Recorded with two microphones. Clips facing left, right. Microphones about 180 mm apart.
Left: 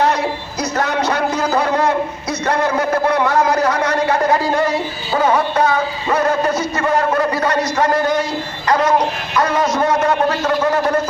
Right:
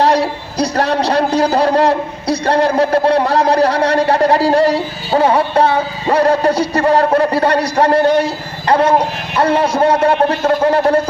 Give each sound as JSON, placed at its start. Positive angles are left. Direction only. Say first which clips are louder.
{"t": 0.0, "sound": "speech", "louder": "right 4 dB", "side_deg": -35}